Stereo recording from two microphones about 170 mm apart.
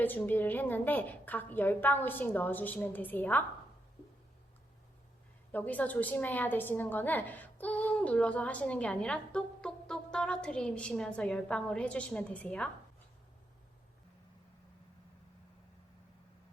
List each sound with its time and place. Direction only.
0.0 s a woman's voice: 10° left (ahead or behind)
5.5 s a woman's voice: 10° left (ahead or behind)